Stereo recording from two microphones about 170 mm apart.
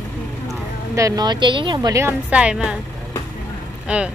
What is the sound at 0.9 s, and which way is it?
A woman's voice, 20° right (ahead or behind).